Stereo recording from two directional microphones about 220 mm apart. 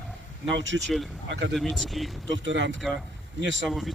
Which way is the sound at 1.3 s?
55° right (ahead or behind).